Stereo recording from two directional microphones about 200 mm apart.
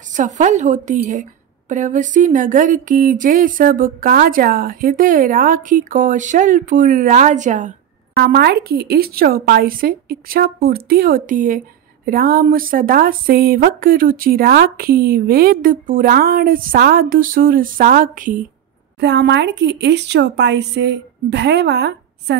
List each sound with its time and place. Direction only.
0.1 s speech: 40° right (ahead or behind)
8.2 s speech: 55° right (ahead or behind)
18.9 s speech: 60° right (ahead or behind)